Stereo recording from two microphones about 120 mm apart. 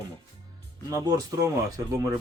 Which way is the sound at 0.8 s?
30° right (ahead or behind).